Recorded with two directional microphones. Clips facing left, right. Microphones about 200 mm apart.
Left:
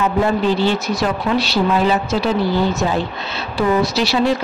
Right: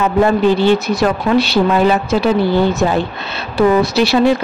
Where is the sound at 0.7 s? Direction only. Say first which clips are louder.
Right 5 dB; 55° right (ahead or behind).